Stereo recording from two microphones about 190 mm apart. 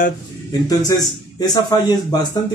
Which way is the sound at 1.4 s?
20° left (ahead or behind).